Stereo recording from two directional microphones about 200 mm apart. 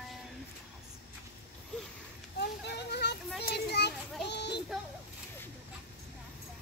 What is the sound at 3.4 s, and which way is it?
Children playing, 55° left (ahead or behind).